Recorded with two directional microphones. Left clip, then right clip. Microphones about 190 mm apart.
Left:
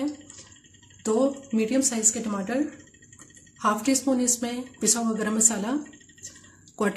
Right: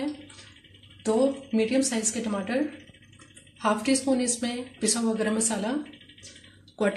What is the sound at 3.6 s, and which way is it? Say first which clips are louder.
A woman's voice: left 1 dB; 65° left (ahead or behind).